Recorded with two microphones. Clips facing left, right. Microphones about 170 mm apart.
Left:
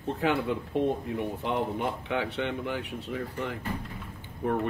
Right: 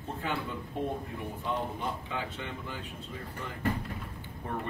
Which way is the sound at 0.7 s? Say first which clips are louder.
Left 6 dB; 75° left (ahead or behind).